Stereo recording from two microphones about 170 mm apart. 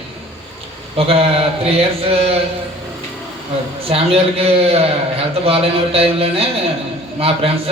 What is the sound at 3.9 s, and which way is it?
Speech, 35° right (ahead or behind).